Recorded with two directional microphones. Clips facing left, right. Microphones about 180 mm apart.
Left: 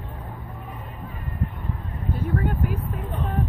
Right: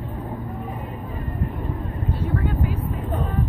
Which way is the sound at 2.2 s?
50° left (ahead or behind).